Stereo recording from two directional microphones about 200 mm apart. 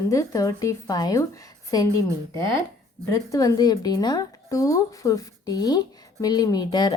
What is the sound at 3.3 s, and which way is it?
Speech, 20° left (ahead or behind).